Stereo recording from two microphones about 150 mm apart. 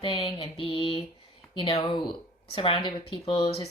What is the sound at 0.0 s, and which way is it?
Speech, 35° left (ahead or behind).